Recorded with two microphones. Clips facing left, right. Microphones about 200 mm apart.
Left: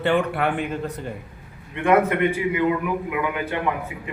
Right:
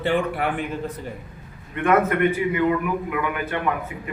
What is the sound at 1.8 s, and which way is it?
A man's voice, 15° left (ahead or behind).